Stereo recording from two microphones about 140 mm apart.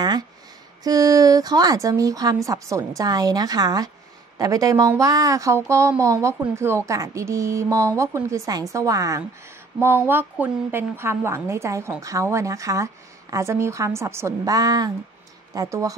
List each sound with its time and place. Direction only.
0.8 s a woman's voice: 25° right (ahead or behind)